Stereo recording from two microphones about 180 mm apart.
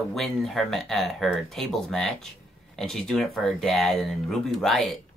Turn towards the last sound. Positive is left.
turn(degrees=0)  # may be behind; listen again after turning